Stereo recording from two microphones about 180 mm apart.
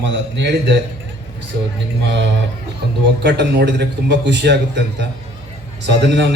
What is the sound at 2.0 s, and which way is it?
A man's voice, 75° right (ahead or behind).